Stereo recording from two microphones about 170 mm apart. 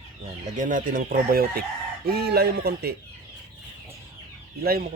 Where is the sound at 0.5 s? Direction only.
50° right (ahead or behind); by 2.9 s 70° right (ahead or behind).